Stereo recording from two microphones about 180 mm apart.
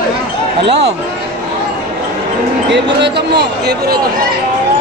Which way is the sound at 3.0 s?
65° right (ahead or behind).